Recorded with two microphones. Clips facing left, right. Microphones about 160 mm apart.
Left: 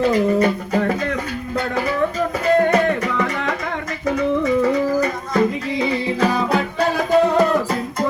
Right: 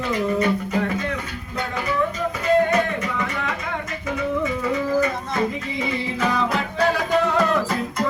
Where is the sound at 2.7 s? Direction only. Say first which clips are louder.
Left 4 dB; 40° left (ahead or behind).